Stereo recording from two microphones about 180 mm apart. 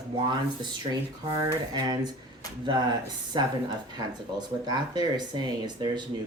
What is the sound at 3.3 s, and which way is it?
Speech, 25° right (ahead or behind).